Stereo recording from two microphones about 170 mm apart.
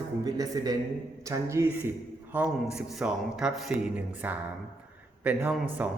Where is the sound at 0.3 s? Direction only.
20° right (ahead or behind).